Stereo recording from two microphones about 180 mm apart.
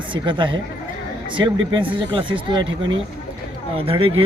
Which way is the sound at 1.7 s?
30° right (ahead or behind).